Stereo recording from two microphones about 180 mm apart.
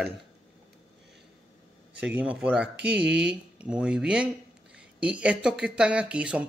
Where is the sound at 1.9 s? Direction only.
5° right (ahead or behind).